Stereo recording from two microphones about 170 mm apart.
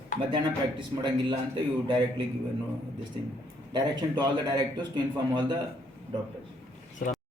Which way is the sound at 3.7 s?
25° right (ahead or behind).